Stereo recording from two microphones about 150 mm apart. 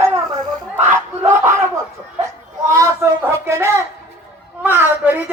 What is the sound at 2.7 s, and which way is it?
Speech, 20° right (ahead or behind).